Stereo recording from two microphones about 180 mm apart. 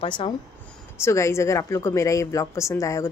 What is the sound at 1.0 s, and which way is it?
A woman's voice, 15° left (ahead or behind).